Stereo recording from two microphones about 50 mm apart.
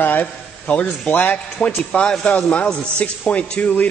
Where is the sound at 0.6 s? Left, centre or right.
Left.